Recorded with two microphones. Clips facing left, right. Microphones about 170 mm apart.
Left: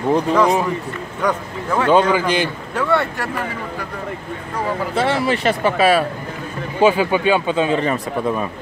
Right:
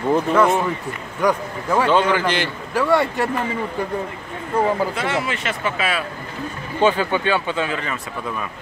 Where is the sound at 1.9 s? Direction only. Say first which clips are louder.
Left 6 dB; 10° left (ahead or behind).